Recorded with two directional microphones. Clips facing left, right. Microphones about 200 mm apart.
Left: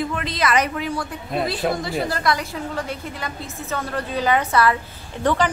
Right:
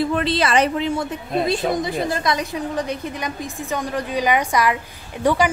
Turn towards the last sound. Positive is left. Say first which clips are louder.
# right 2 dB
turn(degrees=-10)  # may be behind; listen again after turning